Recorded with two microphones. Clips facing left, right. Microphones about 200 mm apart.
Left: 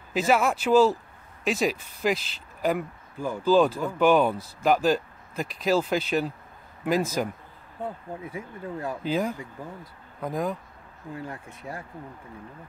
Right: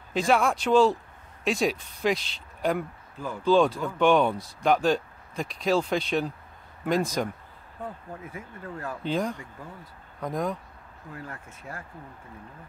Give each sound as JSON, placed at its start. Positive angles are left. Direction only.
{"t": 0.1, "sound": "speech", "side_deg": 5}
{"t": 8.3, "sound": "speech", "side_deg": 15}
{"t": 11.1, "sound": "speech", "side_deg": 15}